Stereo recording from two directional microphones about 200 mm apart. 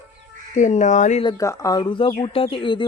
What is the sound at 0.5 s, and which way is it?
Speech, 35° left (ahead or behind).